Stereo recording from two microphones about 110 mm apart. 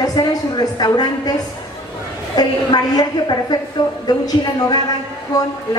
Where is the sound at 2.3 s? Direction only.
40° left (ahead or behind).